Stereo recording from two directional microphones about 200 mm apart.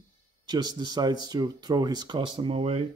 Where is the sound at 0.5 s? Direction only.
20° right (ahead or behind).